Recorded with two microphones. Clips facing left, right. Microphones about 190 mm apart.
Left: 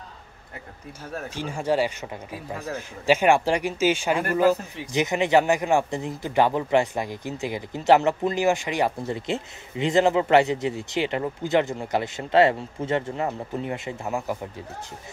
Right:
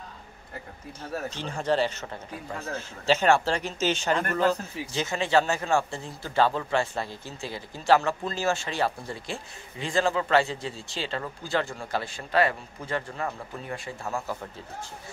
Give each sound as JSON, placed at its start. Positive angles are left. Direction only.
{"t": 1.3, "sound": "a man's voice", "side_deg": 10}